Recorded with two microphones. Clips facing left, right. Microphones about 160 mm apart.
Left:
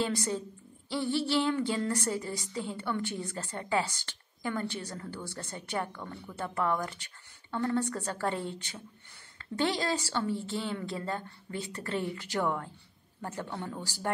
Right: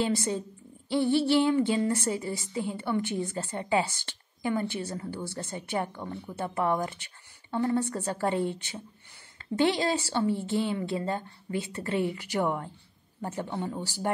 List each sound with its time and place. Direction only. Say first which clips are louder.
0.0 s a woman's voice: right 3 dB; 15° right (ahead or behind)
9.6 s a woman's voice: right 4 dB; 15° right (ahead or behind)